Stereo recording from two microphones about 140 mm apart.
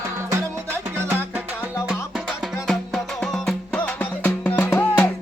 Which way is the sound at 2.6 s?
5° left (ahead or behind).